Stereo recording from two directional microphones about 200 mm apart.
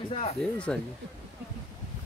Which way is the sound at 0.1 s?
30° left (ahead or behind).